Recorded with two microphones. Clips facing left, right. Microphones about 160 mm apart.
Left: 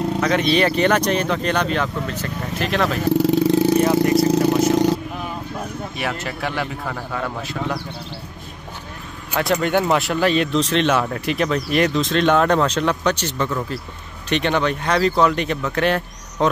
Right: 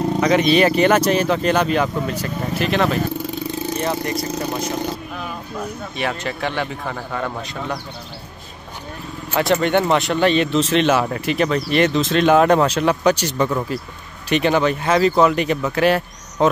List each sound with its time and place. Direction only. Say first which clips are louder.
0.3 s speech: right 4 dB; 5° right (ahead or behind)
3.1 s vehicle: left 10 dB; 80° left
3.7 s speech: left 7 dB; 5° left (ahead or behind)
5.9 s speech: right 3 dB; 5° left (ahead or behind)
9.3 s speech: right 2 dB; centre (ahead or behind)
14.3 s speech: right 3 dB; 5° right (ahead or behind)